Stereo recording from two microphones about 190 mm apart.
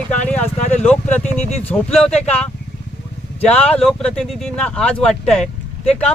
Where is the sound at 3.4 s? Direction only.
5° left (ahead or behind).